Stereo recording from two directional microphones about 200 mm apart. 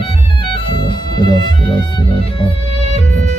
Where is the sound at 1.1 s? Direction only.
20° left (ahead or behind).